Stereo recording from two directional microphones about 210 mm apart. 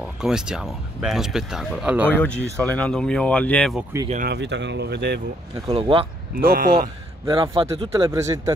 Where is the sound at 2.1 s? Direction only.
10° left (ahead or behind).